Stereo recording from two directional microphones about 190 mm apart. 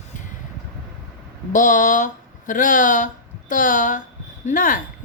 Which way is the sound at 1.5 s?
45° left (ahead or behind).